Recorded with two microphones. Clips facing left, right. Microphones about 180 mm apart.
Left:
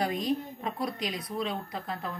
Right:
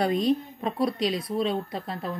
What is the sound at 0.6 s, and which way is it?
Speech, 30° right (ahead or behind).